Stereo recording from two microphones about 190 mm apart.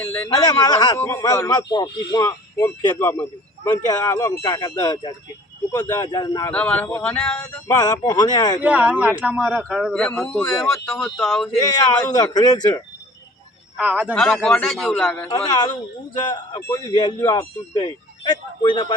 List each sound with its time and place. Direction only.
0.0 s a man's voice: 10° left (ahead or behind)
0.3 s speech: 20° left (ahead or behind)
6.5 s a sound: 5° left (ahead or behind)
7.8 s speech: 20° left (ahead or behind)
8.6 s a man's voice: 5° right (ahead or behind)
12.1 s speech: 20° left (ahead or behind)
13.7 s a man's voice: 5° right (ahead or behind)
14.1 s a man's voice: 5° left (ahead or behind)
15.4 s speech: 20° left (ahead or behind)